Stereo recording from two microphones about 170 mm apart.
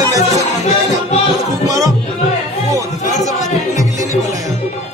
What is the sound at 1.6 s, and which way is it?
Music, 20° right (ahead or behind).